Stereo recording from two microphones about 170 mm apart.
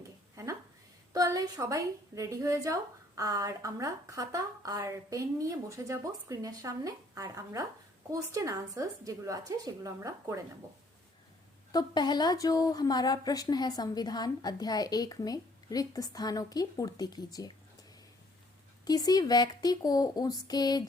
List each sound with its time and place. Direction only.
0.4 s a sound: 20° right (ahead or behind)
1.1 s speech: 20° right (ahead or behind)
11.7 s speech: 25° left (ahead or behind)
18.9 s speech: 20° left (ahead or behind)